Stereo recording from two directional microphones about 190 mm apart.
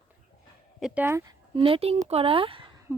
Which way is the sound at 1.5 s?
30° right (ahead or behind).